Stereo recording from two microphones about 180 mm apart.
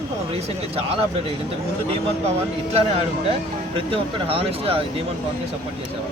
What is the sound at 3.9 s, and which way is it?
Speech, 30° right (ahead or behind).